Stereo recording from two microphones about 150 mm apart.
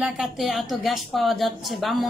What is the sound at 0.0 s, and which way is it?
A woman's voice, centre (ahead or behind).